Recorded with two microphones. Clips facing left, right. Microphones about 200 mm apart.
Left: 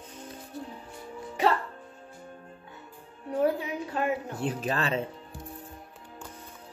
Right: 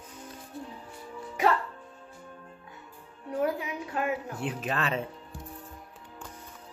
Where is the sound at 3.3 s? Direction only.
30° left (ahead or behind).